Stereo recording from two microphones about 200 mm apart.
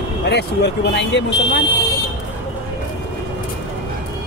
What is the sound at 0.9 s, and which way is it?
Speech, 60° left (ahead or behind).